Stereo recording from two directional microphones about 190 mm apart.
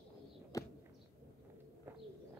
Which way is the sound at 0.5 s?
20° left (ahead or behind).